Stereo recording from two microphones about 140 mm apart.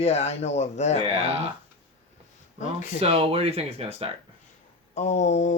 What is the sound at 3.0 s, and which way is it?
Speech, 45° right (ahead or behind).